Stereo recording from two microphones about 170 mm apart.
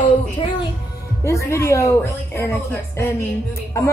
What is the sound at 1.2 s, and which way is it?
A woman's voice, 15° left (ahead or behind).